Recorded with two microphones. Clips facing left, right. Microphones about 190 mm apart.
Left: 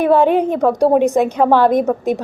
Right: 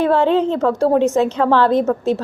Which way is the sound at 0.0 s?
15° left (ahead or behind).